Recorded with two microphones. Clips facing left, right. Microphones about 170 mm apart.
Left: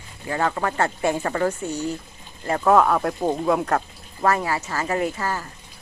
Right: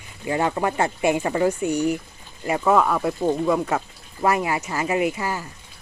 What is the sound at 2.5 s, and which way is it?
Speech, 5° right (ahead or behind).